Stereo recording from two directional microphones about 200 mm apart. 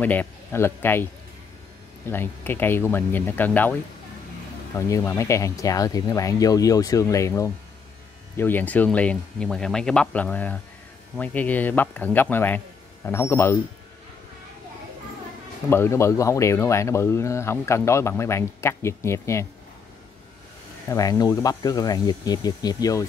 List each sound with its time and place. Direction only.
0.0 s speech: 10° left (ahead or behind)
2.0 s speech: 10° left (ahead or behind)
4.7 s speech: 15° left (ahead or behind)
15.7 s speech: 15° left (ahead or behind)
20.9 s speech: 15° left (ahead or behind)